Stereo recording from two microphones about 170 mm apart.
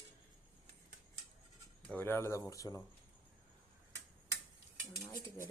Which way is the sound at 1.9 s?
10° left (ahead or behind).